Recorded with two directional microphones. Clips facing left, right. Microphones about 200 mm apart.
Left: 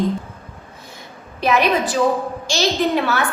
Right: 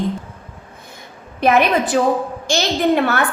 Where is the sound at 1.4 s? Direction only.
55° right (ahead or behind).